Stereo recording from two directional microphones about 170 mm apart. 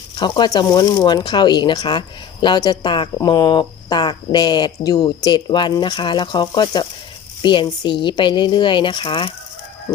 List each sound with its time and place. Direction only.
0.2 s speech: 25° left (ahead or behind)